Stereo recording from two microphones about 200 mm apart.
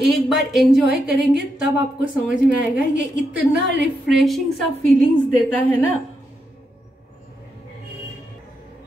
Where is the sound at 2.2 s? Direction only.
5° right (ahead or behind).